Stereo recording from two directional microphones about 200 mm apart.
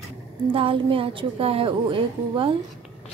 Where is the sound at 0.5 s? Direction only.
25° right (ahead or behind).